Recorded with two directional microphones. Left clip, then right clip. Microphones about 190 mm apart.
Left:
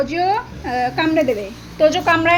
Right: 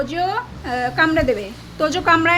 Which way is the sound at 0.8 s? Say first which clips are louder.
Even; 25° right (ahead or behind).